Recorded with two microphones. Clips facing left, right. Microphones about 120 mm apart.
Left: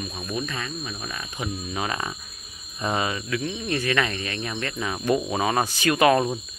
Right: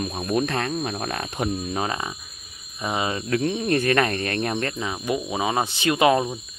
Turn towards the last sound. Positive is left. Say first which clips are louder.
# even
turn(degrees=-20)  # may be behind; listen again after turning